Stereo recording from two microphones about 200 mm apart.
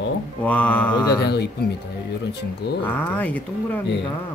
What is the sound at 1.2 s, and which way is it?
Speech, 55° left (ahead or behind).